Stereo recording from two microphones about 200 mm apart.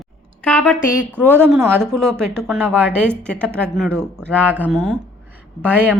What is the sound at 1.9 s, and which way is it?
Speech, 5° left (ahead or behind).